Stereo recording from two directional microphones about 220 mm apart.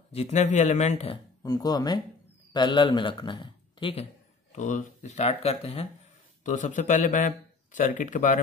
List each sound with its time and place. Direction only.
0.1 s a man's voice: 30° left (ahead or behind)
1.4 s a man's voice: 15° left (ahead or behind); by 8.4 s 35° left (ahead or behind)